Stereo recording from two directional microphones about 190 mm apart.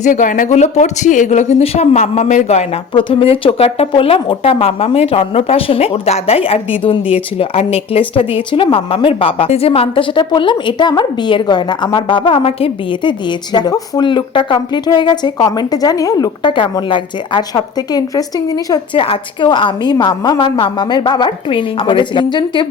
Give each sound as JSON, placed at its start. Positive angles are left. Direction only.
{"t": 0.0, "sound": "speech", "side_deg": 40}